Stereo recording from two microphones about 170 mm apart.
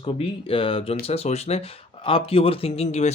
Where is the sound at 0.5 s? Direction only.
30° left (ahead or behind).